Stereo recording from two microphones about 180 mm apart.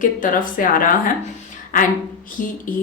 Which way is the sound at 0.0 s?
50° left (ahead or behind).